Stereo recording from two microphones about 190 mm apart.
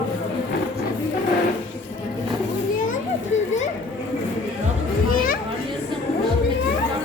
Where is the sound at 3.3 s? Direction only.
40° left (ahead or behind).